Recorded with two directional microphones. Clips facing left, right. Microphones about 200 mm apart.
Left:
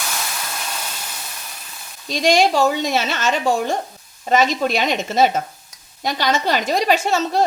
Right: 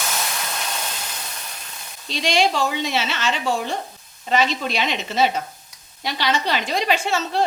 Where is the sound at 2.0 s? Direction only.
45° left (ahead or behind).